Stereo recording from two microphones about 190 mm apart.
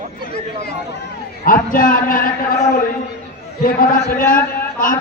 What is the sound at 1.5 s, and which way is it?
A man's voice, 45° left (ahead or behind).